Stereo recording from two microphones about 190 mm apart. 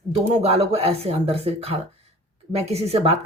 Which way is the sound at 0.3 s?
30° right (ahead or behind).